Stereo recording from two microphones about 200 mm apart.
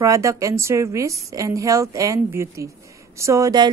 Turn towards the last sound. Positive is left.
turn(degrees=-20)  # may be behind; listen again after turning